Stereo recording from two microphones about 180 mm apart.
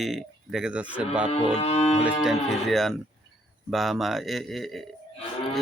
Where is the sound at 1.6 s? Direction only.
35° left (ahead or behind).